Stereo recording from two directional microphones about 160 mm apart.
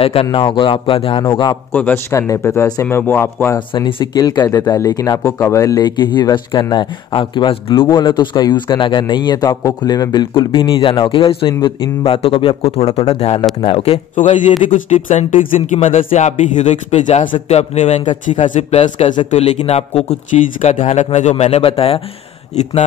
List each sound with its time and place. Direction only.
0.0 s a man's voice: 35° left (ahead or behind)
1.7 s a man's voice: 10° left (ahead or behind)
3.5 s a man's voice: 30° left (ahead or behind)
15.0 s a man's voice: 50° left (ahead or behind); by 22.0 s 35° left (ahead or behind)